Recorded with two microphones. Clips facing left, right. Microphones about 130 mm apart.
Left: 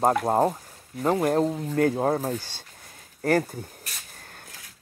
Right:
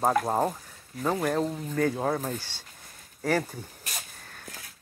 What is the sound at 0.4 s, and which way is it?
Speech, 30° left (ahead or behind).